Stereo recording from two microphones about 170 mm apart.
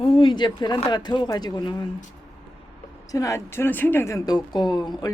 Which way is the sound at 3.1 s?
20° left (ahead or behind).